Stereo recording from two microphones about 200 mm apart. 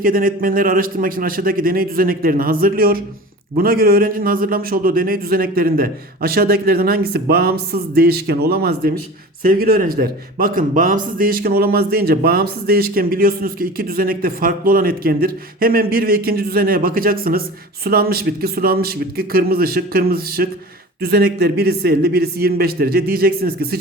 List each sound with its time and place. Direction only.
0.0 s a man's voice: 45° right (ahead or behind)